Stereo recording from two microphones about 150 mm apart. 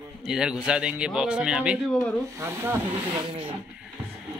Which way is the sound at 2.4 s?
15° right (ahead or behind).